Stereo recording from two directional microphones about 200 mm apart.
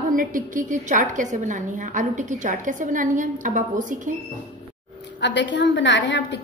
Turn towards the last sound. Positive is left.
turn(degrees=60)  # may be behind; listen again after turning